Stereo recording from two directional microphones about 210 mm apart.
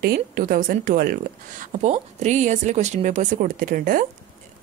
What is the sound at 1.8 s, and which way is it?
Speech, 35° right (ahead or behind).